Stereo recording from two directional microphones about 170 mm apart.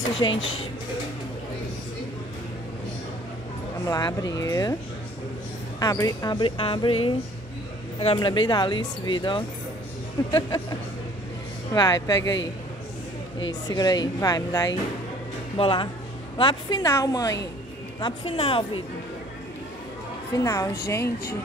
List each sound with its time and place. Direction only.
0.2 s speech: 25° left (ahead or behind)
3.8 s speech: 20° left (ahead or behind)
5.8 s speech: 20° left (ahead or behind)
11.7 s speech: 20° left (ahead or behind)
12.2 s a man's voice: 90° left
13.7 s speech: 25° left (ahead or behind)
18.0 s speech: 35° left (ahead or behind)
20.3 s a woman's voice: 15° left (ahead or behind)